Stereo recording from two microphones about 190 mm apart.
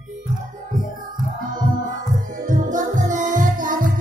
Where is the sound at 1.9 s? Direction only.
45° right (ahead or behind).